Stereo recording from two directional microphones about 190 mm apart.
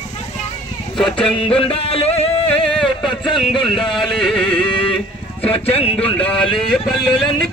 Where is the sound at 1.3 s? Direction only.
30° left (ahead or behind).